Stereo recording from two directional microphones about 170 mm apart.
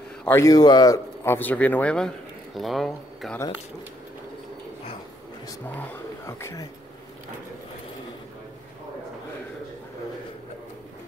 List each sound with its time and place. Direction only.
0.2 s a man's voice: 15° left (ahead or behind)
5.7 s speech: 15° left (ahead or behind)